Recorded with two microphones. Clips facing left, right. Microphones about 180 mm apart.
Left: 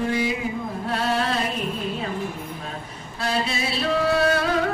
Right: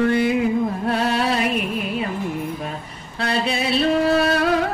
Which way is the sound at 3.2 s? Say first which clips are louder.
Right 3 dB; 65° right (ahead or behind).